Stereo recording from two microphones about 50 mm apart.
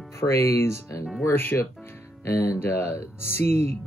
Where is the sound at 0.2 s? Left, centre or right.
Left.